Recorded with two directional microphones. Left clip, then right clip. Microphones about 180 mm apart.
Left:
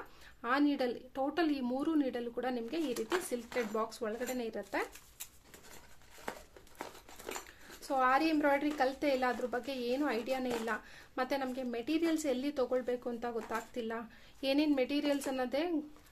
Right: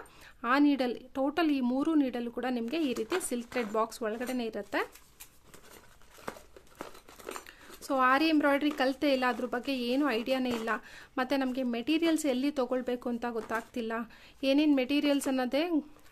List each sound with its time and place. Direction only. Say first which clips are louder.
0.4 s speech: right 5 dB; 40° right (ahead or behind)
7.4 s speech: right 4 dB; 50° right (ahead or behind)